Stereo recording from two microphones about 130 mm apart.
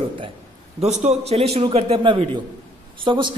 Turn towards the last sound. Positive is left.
turn(degrees=-40)  # may be behind; listen again after turning